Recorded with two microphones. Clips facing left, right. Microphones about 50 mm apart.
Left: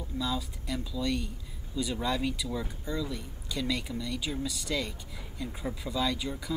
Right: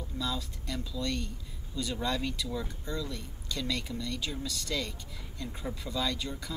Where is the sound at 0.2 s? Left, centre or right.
Centre.